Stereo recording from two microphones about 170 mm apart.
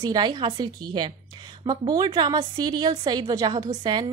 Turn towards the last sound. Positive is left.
turn(degrees=-25)  # may be behind; listen again after turning